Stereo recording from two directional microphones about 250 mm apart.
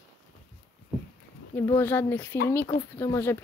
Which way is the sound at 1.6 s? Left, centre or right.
Centre.